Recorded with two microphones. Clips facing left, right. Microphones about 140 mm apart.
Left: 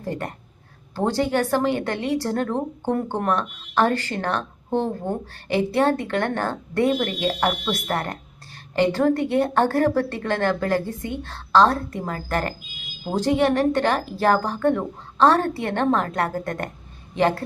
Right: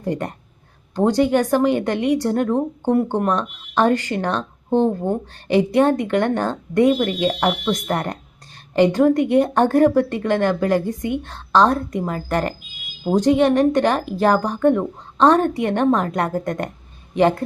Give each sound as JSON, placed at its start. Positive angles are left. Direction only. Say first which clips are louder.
{"t": 0.0, "sound": "a woman's voice", "louder": "right 5 dB", "side_deg": -20}